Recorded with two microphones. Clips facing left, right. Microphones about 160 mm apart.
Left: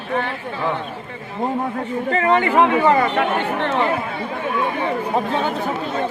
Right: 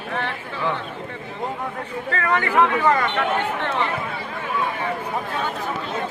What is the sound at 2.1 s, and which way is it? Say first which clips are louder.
Speech: left 5 dB; 20° left (ahead or behind).